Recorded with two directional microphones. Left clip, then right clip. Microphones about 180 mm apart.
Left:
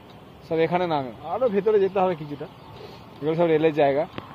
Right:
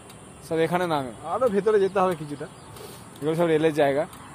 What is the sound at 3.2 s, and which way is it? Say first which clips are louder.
Speech: left 1 dB; 10° left (ahead or behind).